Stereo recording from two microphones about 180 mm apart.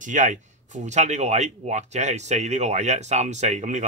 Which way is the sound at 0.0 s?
45° right (ahead or behind).